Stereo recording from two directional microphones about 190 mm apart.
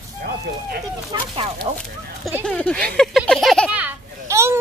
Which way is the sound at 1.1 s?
20° right (ahead or behind).